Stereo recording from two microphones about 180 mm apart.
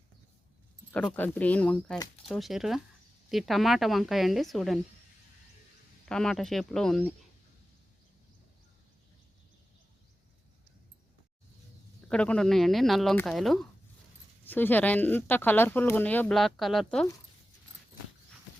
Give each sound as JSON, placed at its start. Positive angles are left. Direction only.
{"t": 0.9, "sound": "speech", "side_deg": 10}
{"t": 6.1, "sound": "speech", "side_deg": 5}
{"t": 12.0, "sound": "speech", "side_deg": 5}